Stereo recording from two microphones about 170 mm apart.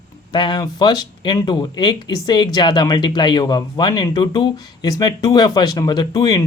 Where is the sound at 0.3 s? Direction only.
25° left (ahead or behind).